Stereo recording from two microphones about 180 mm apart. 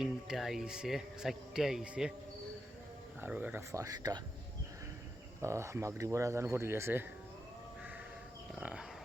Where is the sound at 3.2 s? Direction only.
10° right (ahead or behind).